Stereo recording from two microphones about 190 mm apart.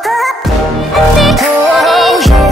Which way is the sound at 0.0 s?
Centre (ahead or behind).